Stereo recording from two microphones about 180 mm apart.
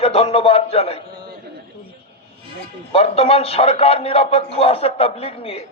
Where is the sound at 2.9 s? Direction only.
35° left (ahead or behind).